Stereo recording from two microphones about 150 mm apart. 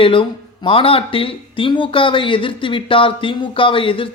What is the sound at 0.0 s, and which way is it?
Speech, 35° left (ahead or behind).